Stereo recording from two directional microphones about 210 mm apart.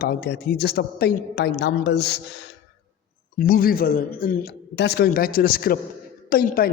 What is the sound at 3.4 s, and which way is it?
A man's voice, 40° left (ahead or behind).